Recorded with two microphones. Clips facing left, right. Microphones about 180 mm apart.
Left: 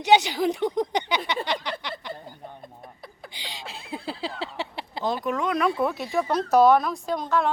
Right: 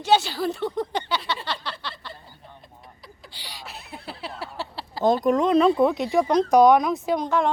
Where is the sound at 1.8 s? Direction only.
15° left (ahead or behind).